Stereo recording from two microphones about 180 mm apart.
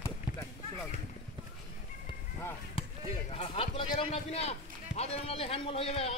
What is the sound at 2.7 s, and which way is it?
Speech, 30° left (ahead or behind).